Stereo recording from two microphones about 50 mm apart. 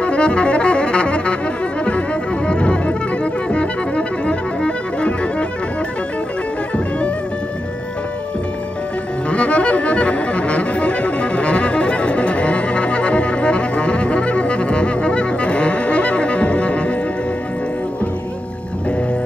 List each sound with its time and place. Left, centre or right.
0.0 s saxophone: left
1.9 s music: left
9.3 s music: left